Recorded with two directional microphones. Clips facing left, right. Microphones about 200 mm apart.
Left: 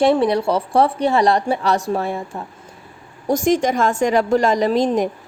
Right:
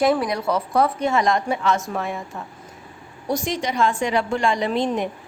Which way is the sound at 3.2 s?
45° left (ahead or behind).